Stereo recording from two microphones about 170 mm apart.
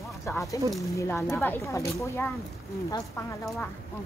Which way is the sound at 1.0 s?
15° left (ahead or behind).